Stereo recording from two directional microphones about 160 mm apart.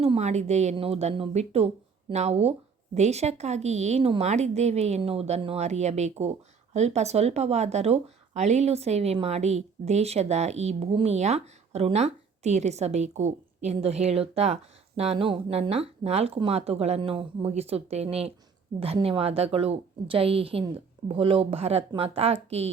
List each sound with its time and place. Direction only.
0.0 s speech: 40° right (ahead or behind)